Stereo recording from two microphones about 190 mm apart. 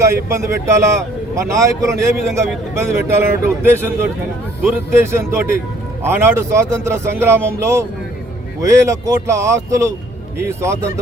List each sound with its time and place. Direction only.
0.0 s a man's voice: 15° right (ahead or behind)